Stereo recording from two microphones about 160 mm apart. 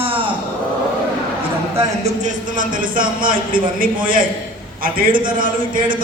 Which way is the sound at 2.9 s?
60° right (ahead or behind).